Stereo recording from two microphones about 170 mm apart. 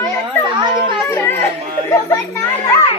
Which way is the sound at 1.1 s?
15° left (ahead or behind).